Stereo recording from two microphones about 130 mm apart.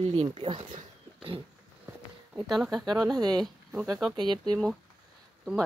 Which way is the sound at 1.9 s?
25° right (ahead or behind).